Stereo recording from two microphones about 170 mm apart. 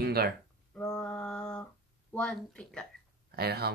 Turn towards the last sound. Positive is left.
turn(degrees=-70)  # may be behind; listen again after turning